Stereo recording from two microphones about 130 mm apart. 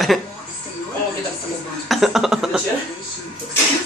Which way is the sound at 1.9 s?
Centre (ahead or behind).